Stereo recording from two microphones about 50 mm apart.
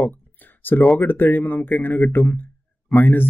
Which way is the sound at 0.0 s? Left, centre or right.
Left.